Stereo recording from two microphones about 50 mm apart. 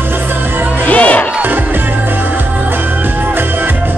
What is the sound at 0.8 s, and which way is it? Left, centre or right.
Music, left.